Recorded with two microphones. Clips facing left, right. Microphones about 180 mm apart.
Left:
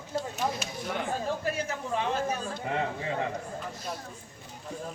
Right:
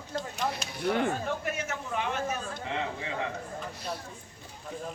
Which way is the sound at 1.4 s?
30° left (ahead or behind).